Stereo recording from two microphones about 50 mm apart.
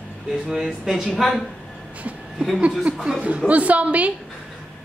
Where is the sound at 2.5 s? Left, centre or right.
Right.